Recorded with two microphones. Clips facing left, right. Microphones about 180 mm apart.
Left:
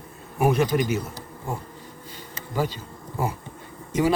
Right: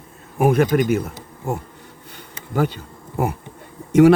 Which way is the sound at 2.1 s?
60° right (ahead or behind).